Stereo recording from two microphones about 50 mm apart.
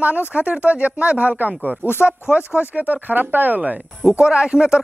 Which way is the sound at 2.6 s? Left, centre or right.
Right.